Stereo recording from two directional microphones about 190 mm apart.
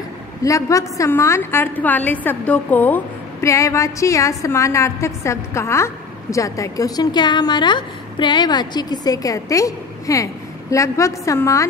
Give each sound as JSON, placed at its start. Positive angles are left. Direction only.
{"t": 0.4, "sound": "a woman's voice", "side_deg": 15}